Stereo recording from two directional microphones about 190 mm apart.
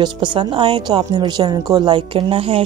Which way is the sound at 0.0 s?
25° right (ahead or behind).